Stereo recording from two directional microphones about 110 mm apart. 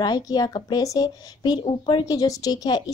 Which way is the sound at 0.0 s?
40° left (ahead or behind).